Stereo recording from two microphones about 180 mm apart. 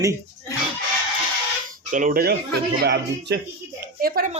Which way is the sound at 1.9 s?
45° right (ahead or behind).